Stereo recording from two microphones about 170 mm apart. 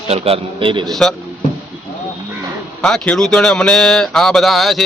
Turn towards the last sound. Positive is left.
turn(degrees=0)  # may be behind; listen again after turning